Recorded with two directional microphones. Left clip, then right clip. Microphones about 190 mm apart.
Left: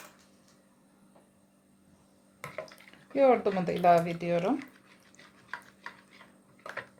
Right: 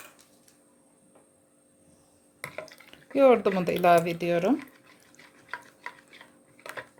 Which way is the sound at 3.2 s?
40° right (ahead or behind).